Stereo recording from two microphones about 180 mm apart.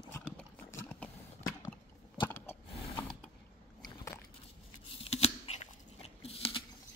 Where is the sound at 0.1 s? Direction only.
15° left (ahead or behind).